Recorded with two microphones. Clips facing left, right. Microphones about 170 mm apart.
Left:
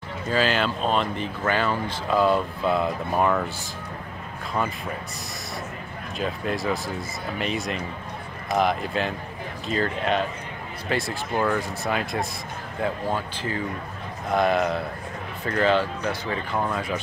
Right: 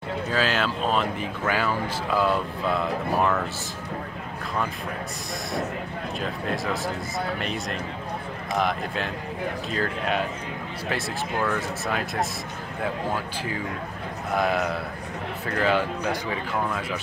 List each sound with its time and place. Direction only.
0.3 s speech: centre (ahead or behind)
3.2 s speech: 10° left (ahead or behind)
6.1 s speech: centre (ahead or behind)
14.3 s speech: 5° right (ahead or behind)